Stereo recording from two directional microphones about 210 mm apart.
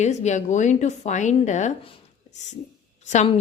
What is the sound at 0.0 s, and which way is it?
A woman's voice, 35° left (ahead or behind).